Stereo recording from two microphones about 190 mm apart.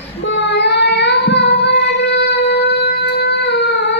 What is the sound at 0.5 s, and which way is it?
Singing, 65° left (ahead or behind).